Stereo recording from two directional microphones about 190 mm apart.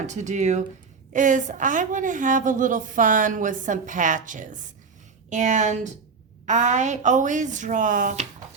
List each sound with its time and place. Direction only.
0.0 s a woman's voice: 40° right (ahead or behind)